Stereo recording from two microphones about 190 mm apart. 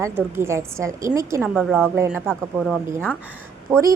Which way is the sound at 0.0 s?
15° right (ahead or behind).